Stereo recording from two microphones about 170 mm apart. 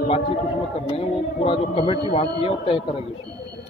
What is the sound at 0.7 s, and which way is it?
Speech, 35° left (ahead or behind).